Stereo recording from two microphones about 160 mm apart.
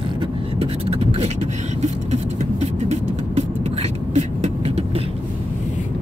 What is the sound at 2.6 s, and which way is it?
Vehicle, 40° right (ahead or behind).